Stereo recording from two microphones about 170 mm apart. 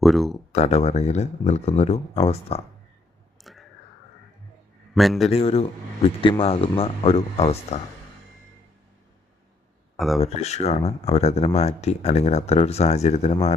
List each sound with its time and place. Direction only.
0.0 s speech: centre (ahead or behind)
0.5 s speech: 40° left (ahead or behind)
3.4 s whispering: centre (ahead or behind)
4.9 s speech: centre (ahead or behind)
5.3 s speech: 35° left (ahead or behind)
10.2 s speech: 40° left (ahead or behind)